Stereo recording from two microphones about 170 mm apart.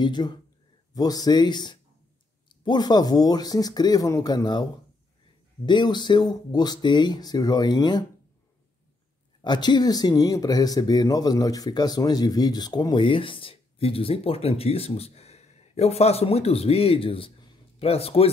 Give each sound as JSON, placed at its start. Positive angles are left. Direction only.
{"t": 0.0, "sound": "speech", "side_deg": 25}
{"t": 5.7, "sound": "speech", "side_deg": 25}
{"t": 9.4, "sound": "speech", "side_deg": 25}